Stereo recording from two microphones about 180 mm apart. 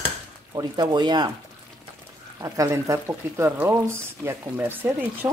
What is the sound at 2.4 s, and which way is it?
Speech, 15° right (ahead or behind).